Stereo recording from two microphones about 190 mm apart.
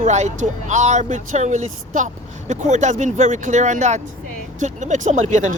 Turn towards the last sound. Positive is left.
turn(degrees=-40)  # may be behind; listen again after turning